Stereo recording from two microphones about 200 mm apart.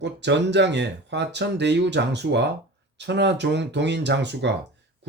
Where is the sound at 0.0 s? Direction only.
60° right (ahead or behind).